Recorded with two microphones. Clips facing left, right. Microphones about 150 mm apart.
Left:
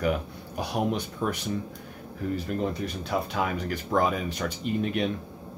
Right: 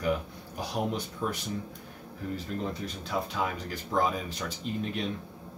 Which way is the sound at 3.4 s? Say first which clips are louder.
Left 4 dB; 65° left (ahead or behind).